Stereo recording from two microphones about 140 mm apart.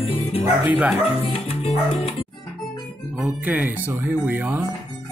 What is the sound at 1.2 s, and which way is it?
Music, 45° left (ahead or behind).